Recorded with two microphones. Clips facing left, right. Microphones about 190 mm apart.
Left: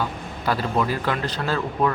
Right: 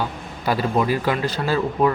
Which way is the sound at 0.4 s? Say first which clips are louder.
Right 3 dB; 15° right (ahead or behind).